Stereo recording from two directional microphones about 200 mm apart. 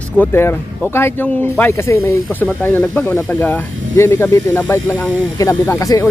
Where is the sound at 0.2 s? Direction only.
10° left (ahead or behind).